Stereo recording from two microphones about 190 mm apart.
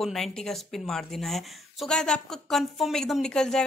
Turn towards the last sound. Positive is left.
turn(degrees=5)  # may be behind; listen again after turning